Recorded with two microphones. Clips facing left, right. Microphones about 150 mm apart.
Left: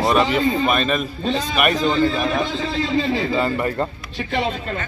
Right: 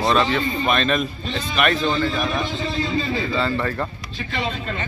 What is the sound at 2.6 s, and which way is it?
Speech, 90° left.